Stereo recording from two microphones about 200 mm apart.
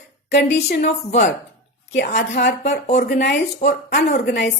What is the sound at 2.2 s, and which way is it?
Speech, 55° left (ahead or behind).